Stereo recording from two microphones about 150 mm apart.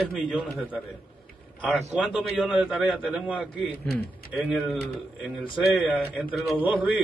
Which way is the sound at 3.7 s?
90° left.